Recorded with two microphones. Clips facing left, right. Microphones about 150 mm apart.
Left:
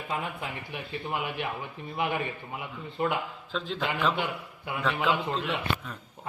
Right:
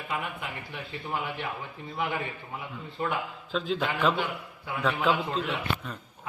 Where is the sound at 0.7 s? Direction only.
15° left (ahead or behind).